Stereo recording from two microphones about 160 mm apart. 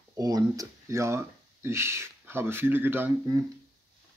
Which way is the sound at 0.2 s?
20° right (ahead or behind).